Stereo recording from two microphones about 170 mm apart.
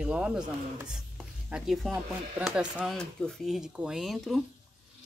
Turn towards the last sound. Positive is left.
turn(degrees=0)  # may be behind; listen again after turning